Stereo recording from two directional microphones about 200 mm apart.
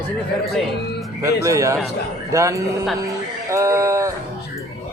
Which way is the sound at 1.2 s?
15° right (ahead or behind).